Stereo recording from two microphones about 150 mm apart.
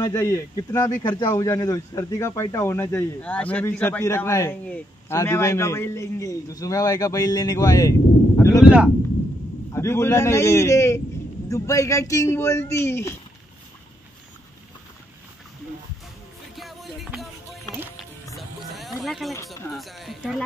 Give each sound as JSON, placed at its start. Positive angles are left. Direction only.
{"t": 0.0, "sound": "a man's voice", "side_deg": 20}
{"t": 8.4, "sound": "a sound", "side_deg": 20}
{"t": 8.6, "sound": "speech", "side_deg": -10}
{"t": 9.7, "sound": "a man's voice", "side_deg": 20}
{"t": 16.5, "sound": "music", "side_deg": 0}
{"t": 18.8, "sound": "music", "side_deg": 0}
{"t": 19.3, "sound": "speech", "side_deg": 20}
{"t": 19.7, "sound": "speech", "side_deg": 0}